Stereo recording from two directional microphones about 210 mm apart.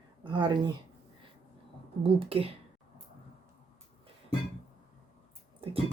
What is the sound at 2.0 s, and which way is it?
Speech, 25° right (ahead or behind).